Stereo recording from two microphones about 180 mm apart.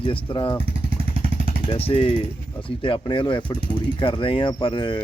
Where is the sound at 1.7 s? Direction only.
30° left (ahead or behind).